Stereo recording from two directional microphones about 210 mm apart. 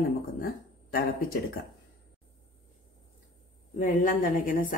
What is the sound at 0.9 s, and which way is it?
Speech, 45° left (ahead or behind).